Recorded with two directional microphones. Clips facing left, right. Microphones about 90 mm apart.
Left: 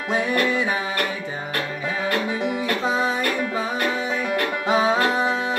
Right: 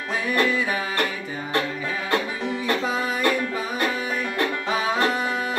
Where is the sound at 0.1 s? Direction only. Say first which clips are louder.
Left 1 dB; 25° left (ahead or behind).